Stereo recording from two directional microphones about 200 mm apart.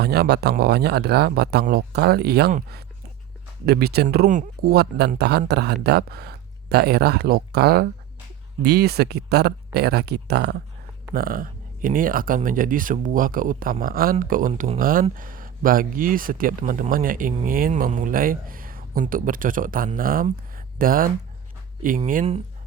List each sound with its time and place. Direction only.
0.0 s speech: 55° right (ahead or behind)